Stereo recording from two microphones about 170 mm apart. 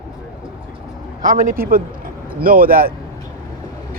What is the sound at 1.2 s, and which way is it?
Speech, 55° right (ahead or behind).